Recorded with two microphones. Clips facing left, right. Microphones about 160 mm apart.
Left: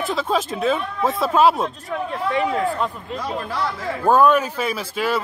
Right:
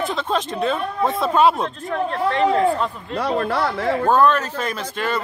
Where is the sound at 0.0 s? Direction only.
5° left (ahead or behind).